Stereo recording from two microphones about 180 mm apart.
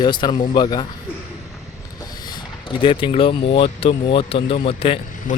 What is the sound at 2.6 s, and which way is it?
Speech, 30° left (ahead or behind).